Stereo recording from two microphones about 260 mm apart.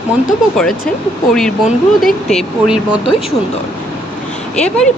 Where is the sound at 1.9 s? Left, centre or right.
Centre.